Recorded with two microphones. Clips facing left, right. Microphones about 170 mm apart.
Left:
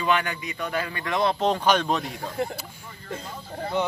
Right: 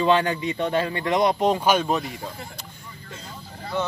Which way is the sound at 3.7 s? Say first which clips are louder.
Left 1 dB; 20° left (ahead or behind).